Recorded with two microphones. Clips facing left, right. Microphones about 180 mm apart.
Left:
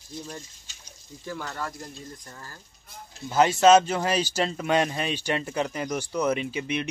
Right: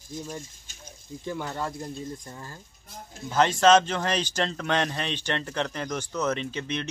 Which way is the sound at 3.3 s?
10° left (ahead or behind).